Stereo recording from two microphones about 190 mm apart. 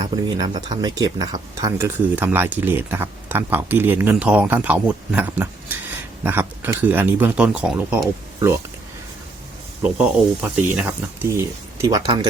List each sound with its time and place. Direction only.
0.0 s speech: 20° right (ahead or behind); by 8.1 s 5° right (ahead or behind)
9.8 s speech: 5° right (ahead or behind)